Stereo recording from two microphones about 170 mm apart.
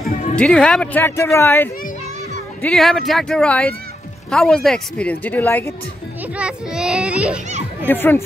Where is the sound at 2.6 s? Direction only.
Centre (ahead or behind).